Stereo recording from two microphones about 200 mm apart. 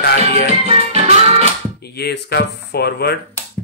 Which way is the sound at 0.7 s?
30° right (ahead or behind).